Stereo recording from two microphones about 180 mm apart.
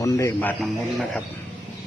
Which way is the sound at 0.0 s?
20° left (ahead or behind).